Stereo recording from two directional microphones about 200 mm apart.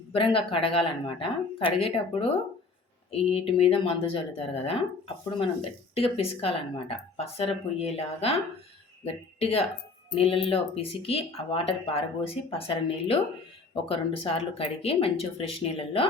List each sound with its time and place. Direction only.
0.1 s speech: 25° left (ahead or behind)